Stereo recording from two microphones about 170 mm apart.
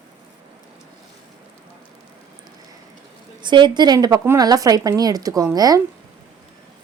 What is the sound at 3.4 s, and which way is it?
Speech, 25° right (ahead or behind).